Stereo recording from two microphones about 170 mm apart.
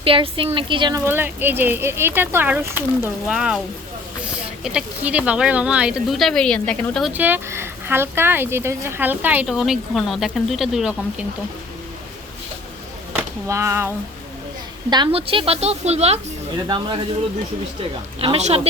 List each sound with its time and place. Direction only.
0.0 s a woman's voice: 30° right (ahead or behind)
1.0 s speech: 10° right (ahead or behind)
4.6 s speech: 5° right (ahead or behind)
7.1 s speech: 10° right (ahead or behind)
13.1 s speech: 15° right (ahead or behind)
14.8 s a woman's voice: 25° right (ahead or behind)
16.6 s speech: 25° right (ahead or behind)
18.2 s a woman's voice: 35° right (ahead or behind)